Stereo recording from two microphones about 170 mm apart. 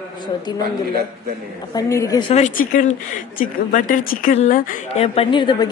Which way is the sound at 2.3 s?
50° left (ahead or behind).